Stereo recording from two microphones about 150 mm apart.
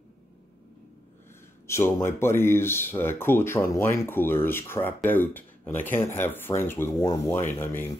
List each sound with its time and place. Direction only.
1.7 s speech: 15° left (ahead or behind)